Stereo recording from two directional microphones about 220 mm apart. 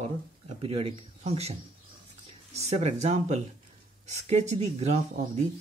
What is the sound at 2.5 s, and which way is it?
Speech, 30° right (ahead or behind).